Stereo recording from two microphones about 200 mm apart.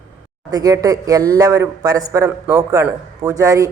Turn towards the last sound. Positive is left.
turn(degrees=-15)  # may be behind; listen again after turning